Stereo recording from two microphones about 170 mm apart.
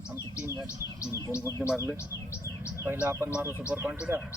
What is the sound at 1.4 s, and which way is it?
Speech, 15° left (ahead or behind).